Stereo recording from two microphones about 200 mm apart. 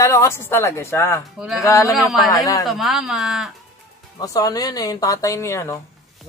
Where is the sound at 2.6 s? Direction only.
Centre (ahead or behind).